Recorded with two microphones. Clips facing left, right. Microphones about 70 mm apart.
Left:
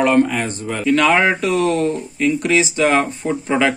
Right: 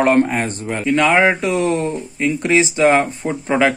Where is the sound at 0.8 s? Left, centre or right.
Centre.